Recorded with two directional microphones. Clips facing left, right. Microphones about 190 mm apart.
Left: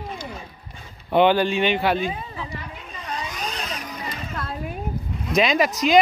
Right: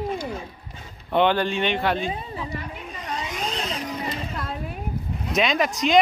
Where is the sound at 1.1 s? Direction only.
5° left (ahead or behind).